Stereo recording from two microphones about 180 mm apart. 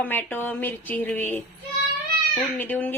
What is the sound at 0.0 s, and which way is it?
A woman's voice, 10° left (ahead or behind).